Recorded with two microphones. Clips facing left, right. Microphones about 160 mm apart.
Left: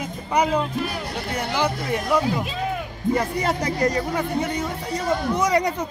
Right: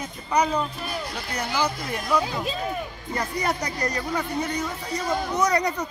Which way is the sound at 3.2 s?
25° left (ahead or behind).